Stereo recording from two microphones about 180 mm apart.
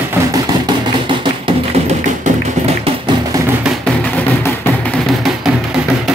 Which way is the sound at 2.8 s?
20° right (ahead or behind).